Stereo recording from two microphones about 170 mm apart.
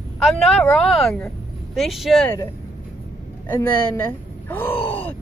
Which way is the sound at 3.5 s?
15° left (ahead or behind).